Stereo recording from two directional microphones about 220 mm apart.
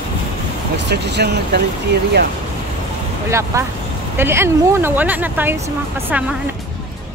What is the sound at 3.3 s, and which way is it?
Speech, 15° right (ahead or behind).